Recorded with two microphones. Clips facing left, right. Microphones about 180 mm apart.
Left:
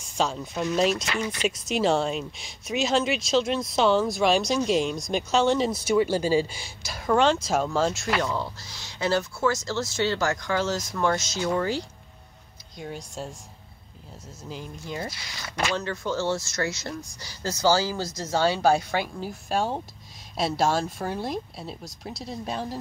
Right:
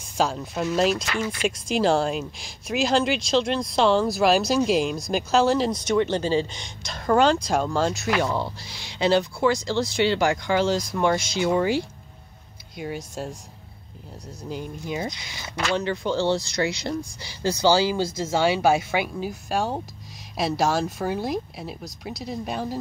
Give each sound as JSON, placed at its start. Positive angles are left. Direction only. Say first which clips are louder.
{"t": 0.0, "sound": "speech", "louder": "right 2 dB", "side_deg": 0}
{"t": 1.1, "sound": "speech", "louder": "right 2 dB", "side_deg": 20}
{"t": 1.7, "sound": "speech", "louder": "right 2 dB", "side_deg": 0}
{"t": 8.3, "sound": "speech", "louder": "right 3 dB", "side_deg": -15}
{"t": 15.0, "sound": "speech", "louder": "right 3 dB", "side_deg": -20}
{"t": 16.2, "sound": "speech", "louder": "right 4 dB", "side_deg": -30}
{"t": 17.4, "sound": "speech", "louder": "right 3 dB", "side_deg": -15}
{"t": 21.5, "sound": "speech", "louder": "right 2 dB", "side_deg": -15}
{"t": 22.0, "sound": "speech", "louder": "right 3 dB", "side_deg": -5}